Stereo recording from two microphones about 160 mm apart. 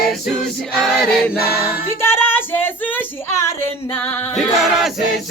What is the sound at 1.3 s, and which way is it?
Choir, 70° left (ahead or behind).